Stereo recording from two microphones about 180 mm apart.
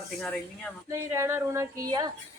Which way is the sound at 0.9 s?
15° right (ahead or behind).